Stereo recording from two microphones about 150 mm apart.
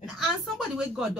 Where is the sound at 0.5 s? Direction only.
5° right (ahead or behind).